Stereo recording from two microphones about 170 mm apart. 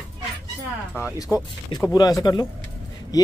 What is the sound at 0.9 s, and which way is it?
Speech, 15° left (ahead or behind).